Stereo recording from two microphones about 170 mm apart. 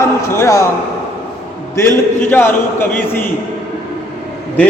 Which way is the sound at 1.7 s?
15° left (ahead or behind).